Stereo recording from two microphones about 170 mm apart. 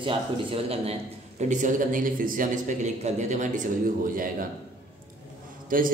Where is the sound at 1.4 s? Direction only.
45° right (ahead or behind).